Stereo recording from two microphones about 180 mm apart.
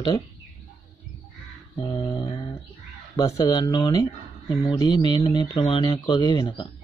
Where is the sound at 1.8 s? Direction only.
25° left (ahead or behind).